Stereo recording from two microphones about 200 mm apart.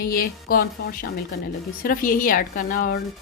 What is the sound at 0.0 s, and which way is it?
A woman's voice, 50° left (ahead or behind).